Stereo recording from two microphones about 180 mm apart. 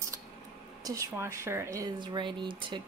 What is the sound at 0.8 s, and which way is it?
A woman's voice, 15° right (ahead or behind).